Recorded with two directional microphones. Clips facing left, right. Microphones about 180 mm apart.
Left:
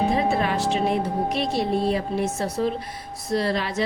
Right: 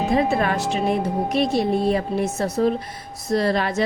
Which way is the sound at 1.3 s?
50° right (ahead or behind).